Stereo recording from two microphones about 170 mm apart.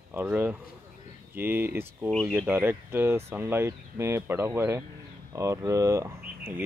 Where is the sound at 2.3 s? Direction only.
10° right (ahead or behind).